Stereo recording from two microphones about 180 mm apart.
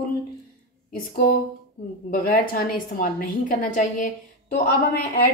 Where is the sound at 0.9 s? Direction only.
55° left (ahead or behind).